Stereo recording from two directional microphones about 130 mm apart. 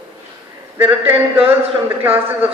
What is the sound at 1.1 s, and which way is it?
Speech, 45° right (ahead or behind).